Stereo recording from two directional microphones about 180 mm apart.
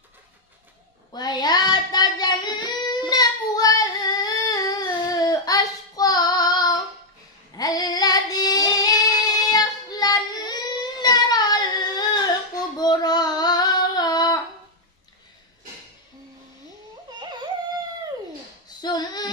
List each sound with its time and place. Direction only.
1.1 s child singing: 20° left (ahead or behind)
12.7 s female singing: 20° left (ahead or behind)
17.2 s yodeling: 25° right (ahead or behind)
18.8 s a sound: 25° left (ahead or behind)